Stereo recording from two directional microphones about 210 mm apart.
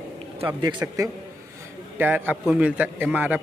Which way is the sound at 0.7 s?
15° right (ahead or behind).